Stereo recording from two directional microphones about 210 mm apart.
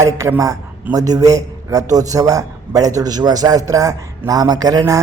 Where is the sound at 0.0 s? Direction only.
15° right (ahead or behind).